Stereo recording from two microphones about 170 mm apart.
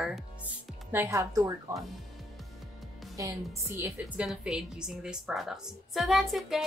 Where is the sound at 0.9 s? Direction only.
15° right (ahead or behind).